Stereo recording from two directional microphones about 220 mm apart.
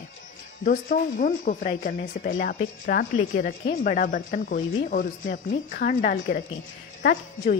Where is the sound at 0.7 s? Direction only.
35° left (ahead or behind).